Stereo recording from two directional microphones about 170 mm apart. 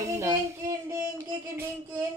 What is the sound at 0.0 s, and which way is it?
Child singing, 15° right (ahead or behind).